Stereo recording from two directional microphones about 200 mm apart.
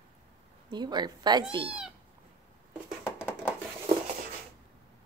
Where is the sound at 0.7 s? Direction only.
20° right (ahead or behind).